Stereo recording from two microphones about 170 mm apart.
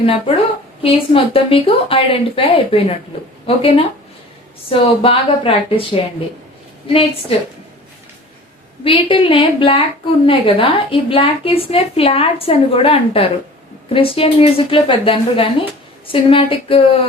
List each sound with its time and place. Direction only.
0.0 s a woman's voice: 35° left (ahead or behind)
8.8 s a woman's voice: 30° left (ahead or behind)